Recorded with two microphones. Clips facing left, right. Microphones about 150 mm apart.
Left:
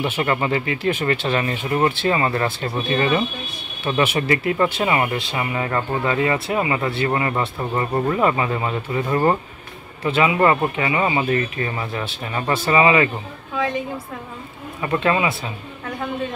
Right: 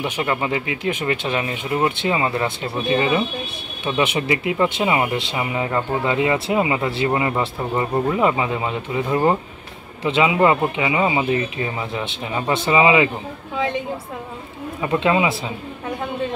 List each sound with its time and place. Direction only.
0.0 s speech: 10° right (ahead or behind)
15.0 s speech: 20° right (ahead or behind)